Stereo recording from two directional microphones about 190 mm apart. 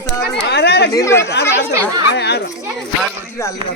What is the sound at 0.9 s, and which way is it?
Speech, 15° left (ahead or behind).